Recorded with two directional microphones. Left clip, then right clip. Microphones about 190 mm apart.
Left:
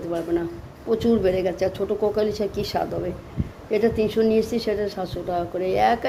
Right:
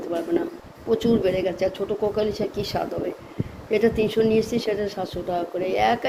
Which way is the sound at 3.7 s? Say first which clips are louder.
Even; centre (ahead or behind).